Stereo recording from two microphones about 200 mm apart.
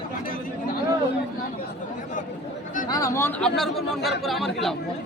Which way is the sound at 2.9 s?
15° left (ahead or behind).